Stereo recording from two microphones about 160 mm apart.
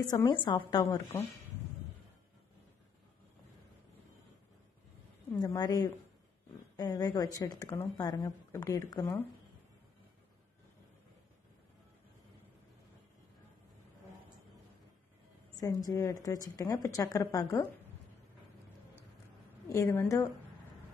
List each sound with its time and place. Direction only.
0.0 s a woman's voice: 25° left (ahead or behind)
5.4 s a woman's voice: 20° left (ahead or behind)
6.8 s a woman's voice: 25° left (ahead or behind)
15.6 s a woman's voice: 20° left (ahead or behind)
19.7 s a woman's voice: 15° left (ahead or behind)